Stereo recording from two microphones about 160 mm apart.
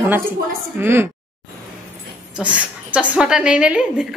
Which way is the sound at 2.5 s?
10° right (ahead or behind).